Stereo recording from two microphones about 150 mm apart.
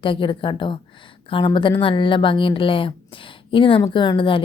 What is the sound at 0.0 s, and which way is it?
A woman's voice, 35° left (ahead or behind).